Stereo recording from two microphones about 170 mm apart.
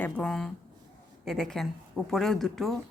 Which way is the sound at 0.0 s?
5° left (ahead or behind).